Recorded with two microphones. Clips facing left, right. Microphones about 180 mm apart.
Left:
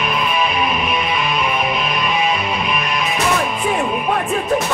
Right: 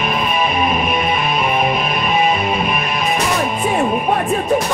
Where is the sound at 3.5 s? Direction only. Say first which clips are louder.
Right 2 dB; 25° right (ahead or behind).